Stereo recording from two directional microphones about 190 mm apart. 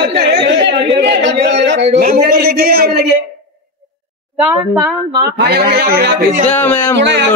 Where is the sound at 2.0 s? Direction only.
50° right (ahead or behind).